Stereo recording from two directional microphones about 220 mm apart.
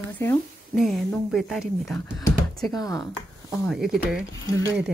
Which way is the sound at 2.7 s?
15° left (ahead or behind).